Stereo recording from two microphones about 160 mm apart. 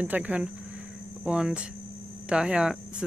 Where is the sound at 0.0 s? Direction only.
10° right (ahead or behind).